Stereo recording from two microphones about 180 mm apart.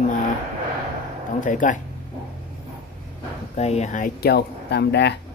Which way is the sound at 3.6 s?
35° left (ahead or behind).